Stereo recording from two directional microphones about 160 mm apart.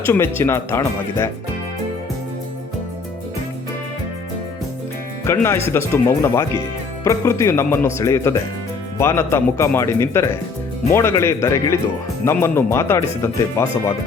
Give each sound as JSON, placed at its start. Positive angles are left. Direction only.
{"t": 0.0, "sound": "speech", "side_deg": 15}
{"t": 5.2, "sound": "speech", "side_deg": 15}